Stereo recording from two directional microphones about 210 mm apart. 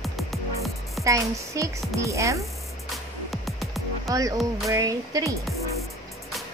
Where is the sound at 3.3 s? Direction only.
Centre (ahead or behind).